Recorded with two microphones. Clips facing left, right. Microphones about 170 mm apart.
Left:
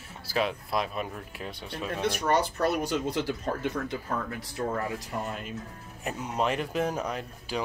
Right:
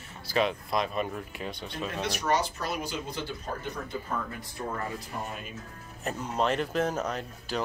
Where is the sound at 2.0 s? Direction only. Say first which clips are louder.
Left 3 dB; 55° left (ahead or behind); by 5.5 s 80° left.